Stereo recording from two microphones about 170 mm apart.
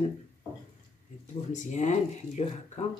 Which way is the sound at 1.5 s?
45° left (ahead or behind).